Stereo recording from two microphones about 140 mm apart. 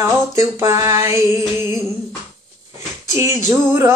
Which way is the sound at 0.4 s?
20° right (ahead or behind).